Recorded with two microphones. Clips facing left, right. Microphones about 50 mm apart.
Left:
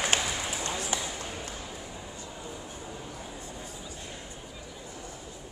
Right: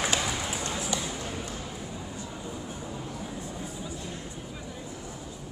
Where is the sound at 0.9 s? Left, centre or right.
Left.